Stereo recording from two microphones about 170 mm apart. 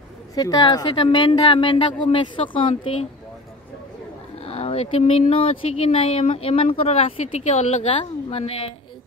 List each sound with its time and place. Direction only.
0.3 s a woman's voice: 20° left (ahead or behind); by 3.1 s 40° left (ahead or behind)
4.4 s speech: 35° left (ahead or behind)